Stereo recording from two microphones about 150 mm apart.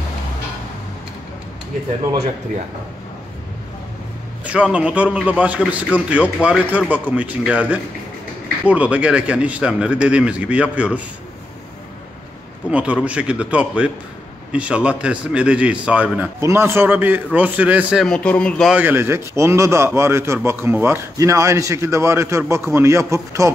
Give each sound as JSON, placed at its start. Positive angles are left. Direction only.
{"t": 4.5, "sound": "a man's voice", "side_deg": -5}
{"t": 12.6, "sound": "a man's voice", "side_deg": -10}
{"t": 18.0, "sound": "a man's voice", "side_deg": 5}
{"t": 18.7, "sound": "a man's voice", "side_deg": -10}